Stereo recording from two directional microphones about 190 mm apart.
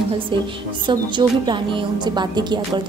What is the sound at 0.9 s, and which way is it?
A woman's voice, 25° right (ahead or behind).